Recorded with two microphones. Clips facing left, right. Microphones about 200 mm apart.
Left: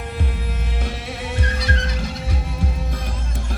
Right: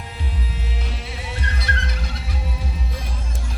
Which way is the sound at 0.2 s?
55° left (ahead or behind).